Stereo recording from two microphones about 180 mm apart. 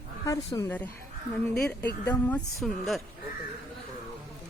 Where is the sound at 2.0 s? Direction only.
10° left (ahead or behind).